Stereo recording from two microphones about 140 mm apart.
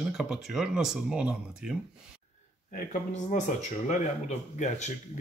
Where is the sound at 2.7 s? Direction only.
60° left (ahead or behind).